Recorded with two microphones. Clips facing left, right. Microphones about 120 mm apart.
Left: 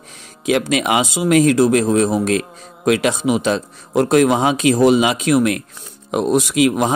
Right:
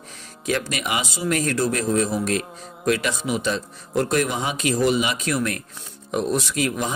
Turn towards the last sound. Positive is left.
turn(degrees=55)  # may be behind; listen again after turning